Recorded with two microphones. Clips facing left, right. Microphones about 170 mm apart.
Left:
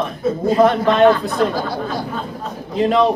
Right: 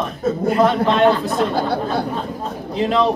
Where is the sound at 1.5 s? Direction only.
60° right (ahead or behind).